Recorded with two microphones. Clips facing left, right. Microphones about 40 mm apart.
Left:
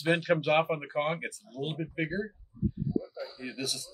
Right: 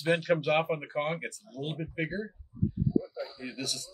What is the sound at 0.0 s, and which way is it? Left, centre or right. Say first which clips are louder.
Speech: even; centre.